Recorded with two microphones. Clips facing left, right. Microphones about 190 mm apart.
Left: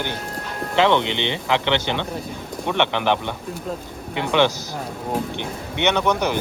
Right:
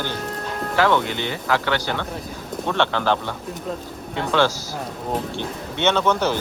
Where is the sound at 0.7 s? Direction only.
20° left (ahead or behind).